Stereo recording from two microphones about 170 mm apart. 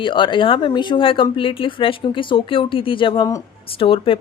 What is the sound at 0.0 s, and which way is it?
A woman's voice, 30° left (ahead or behind).